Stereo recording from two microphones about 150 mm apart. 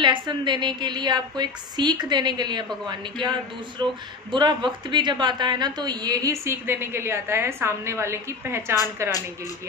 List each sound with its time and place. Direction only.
0.0 s a woman's voice: 30° right (ahead or behind)
4.3 s a woman's voice: 30° right (ahead or behind)